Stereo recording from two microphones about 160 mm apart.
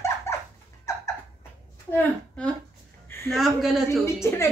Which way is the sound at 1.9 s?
10° left (ahead or behind).